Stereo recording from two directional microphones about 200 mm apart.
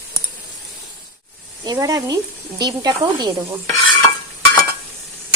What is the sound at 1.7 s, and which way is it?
Speech, 20° right (ahead or behind).